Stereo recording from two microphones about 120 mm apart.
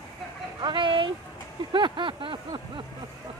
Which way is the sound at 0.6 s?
40° right (ahead or behind).